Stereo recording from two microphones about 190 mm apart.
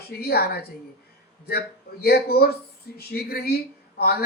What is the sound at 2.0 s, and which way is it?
Speech, 55° left (ahead or behind).